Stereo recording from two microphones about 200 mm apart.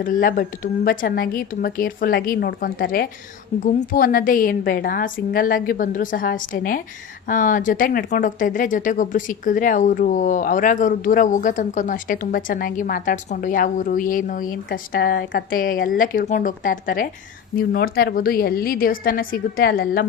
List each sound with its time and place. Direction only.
0.0 s a woman's voice: 45° left (ahead or behind)